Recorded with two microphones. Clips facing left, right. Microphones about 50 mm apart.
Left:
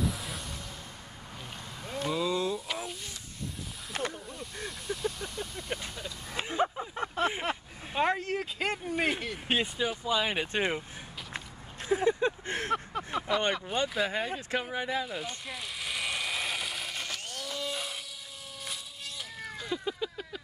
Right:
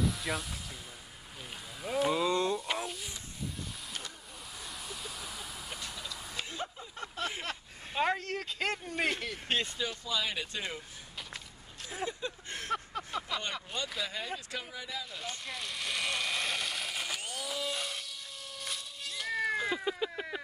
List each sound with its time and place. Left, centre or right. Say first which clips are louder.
0.0 s music: right 1 dB; centre
1.8 s speech: right 2 dB; centre
3.9 s a sound: left 11 dB; left
4.4 s vehicle: left 5 dB; centre
6.0 s vehicle: left 4 dB; left
7.9 s speech: left 3 dB; centre
10.0 s speech: left 6 dB; left
11.3 s a sound: left 6 dB; left
12.2 s speech: left 9 dB; left
12.7 s a sound: right 1 dB; centre
13.9 s speech: left 7 dB; left
15.0 s vehicle: left 4 dB; centre
18.6 s cat: even; centre
19.5 s a sound: right 3 dB; centre